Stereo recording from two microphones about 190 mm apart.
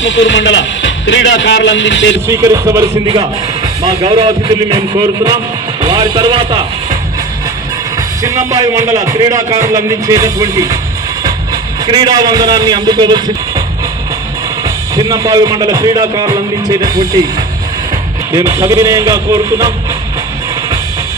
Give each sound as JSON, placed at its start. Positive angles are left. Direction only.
{"t": 0.0, "sound": "a man's voice", "side_deg": 75}
{"t": 2.2, "sound": "speech", "side_deg": -15}
{"t": 8.2, "sound": "speech", "side_deg": -15}
{"t": 11.8, "sound": "speech", "side_deg": -20}
{"t": 15.0, "sound": "speech", "side_deg": -20}
{"t": 18.3, "sound": "speech", "side_deg": -15}